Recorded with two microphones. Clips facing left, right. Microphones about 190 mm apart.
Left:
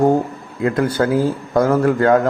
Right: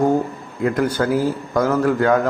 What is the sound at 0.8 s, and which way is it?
Speech, 25° left (ahead or behind).